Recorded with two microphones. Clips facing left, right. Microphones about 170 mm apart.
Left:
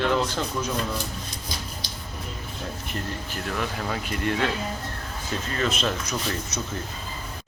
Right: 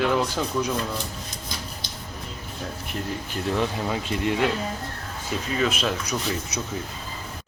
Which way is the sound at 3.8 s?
20° right (ahead or behind).